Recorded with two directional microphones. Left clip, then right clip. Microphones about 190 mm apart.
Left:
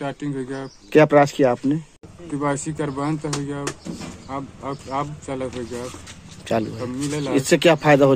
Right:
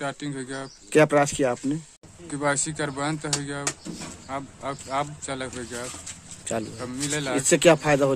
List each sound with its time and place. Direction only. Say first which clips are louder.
0.0 s speech: left 3 dB; 10° right (ahead or behind)
0.9 s speech: left 5 dB; centre (ahead or behind)
7.3 s speech: left 2 dB; centre (ahead or behind)